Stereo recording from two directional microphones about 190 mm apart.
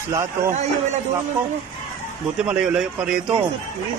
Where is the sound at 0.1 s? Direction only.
15° right (ahead or behind).